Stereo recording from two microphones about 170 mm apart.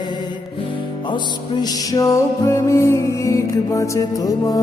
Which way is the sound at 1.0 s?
25° left (ahead or behind).